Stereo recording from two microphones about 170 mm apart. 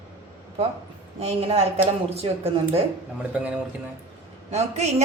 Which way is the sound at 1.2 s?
35° right (ahead or behind).